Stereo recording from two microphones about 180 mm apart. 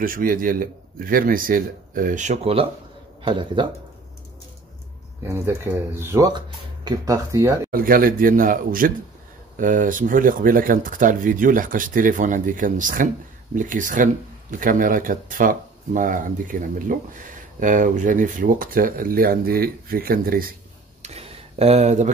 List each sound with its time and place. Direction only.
0.0 s speech: 50° right (ahead or behind); by 3.6 s 30° right (ahead or behind)
5.2 s speech: 15° right (ahead or behind)
7.7 s speech: 50° right (ahead or behind)
21.0 s a sound: 35° right (ahead or behind)